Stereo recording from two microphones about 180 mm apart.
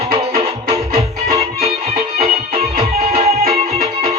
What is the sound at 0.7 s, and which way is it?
Music, 20° right (ahead or behind).